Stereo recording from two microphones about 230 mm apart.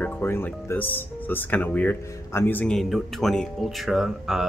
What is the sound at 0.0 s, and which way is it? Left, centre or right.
Speech, centre.